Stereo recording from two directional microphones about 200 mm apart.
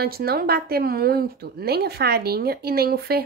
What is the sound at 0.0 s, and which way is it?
A woman's voice, 50° right (ahead or behind).